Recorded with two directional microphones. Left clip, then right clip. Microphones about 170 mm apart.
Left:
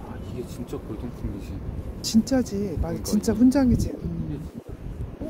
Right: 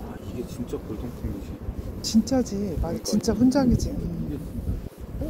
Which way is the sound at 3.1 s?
90° left.